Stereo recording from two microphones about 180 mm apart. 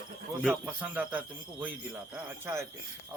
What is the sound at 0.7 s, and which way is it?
A man's voice, 10° right (ahead or behind).